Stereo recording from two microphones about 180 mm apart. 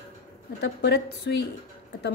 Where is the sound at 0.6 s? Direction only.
65° left (ahead or behind).